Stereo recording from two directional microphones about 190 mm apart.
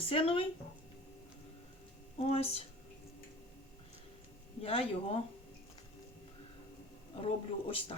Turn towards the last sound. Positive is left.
turn(degrees=30)  # may be behind; listen again after turning